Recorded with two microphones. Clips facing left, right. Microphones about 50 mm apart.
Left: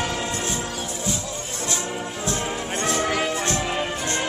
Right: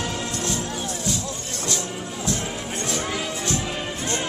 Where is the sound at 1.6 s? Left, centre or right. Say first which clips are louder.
Left 1 dB; left.